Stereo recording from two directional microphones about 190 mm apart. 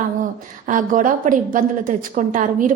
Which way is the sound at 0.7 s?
45° right (ahead or behind).